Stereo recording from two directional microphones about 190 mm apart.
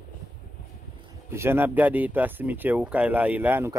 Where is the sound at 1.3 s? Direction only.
15° right (ahead or behind).